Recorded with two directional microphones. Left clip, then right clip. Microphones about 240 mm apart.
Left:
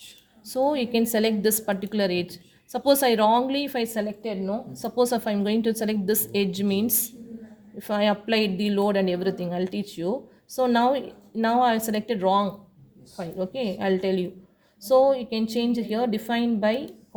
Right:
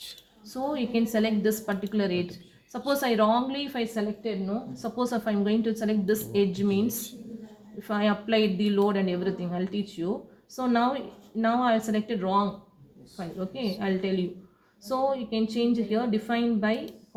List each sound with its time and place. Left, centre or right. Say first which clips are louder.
0.4 s a woman's voice: left 7 dB; left